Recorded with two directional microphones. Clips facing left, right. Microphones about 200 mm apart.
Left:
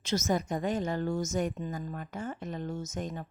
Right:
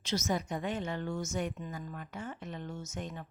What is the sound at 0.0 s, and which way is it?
A woman's voice, 45° left (ahead or behind).